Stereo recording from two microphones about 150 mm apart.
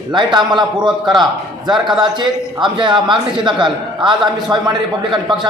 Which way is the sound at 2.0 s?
30° right (ahead or behind).